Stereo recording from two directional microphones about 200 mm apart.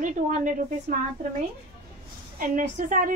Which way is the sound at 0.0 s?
40° right (ahead or behind).